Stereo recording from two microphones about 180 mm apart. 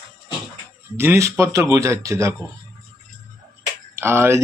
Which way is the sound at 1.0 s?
15° right (ahead or behind).